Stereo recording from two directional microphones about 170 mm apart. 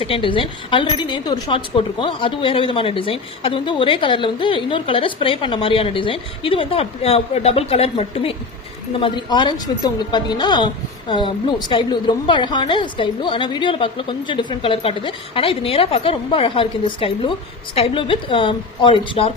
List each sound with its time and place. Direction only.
0.0 s a woman's voice: 30° left (ahead or behind)